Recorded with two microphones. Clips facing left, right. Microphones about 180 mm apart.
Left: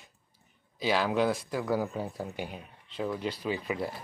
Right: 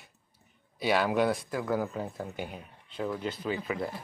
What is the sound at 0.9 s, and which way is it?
Speech, 5° right (ahead or behind).